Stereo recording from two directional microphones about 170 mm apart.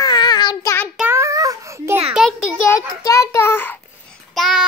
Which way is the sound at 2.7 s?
15° left (ahead or behind).